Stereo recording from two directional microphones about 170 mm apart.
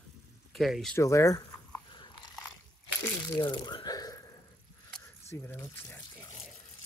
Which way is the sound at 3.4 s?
25° left (ahead or behind).